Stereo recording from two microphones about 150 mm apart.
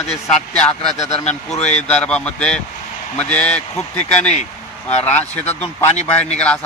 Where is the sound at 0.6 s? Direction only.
5° left (ahead or behind).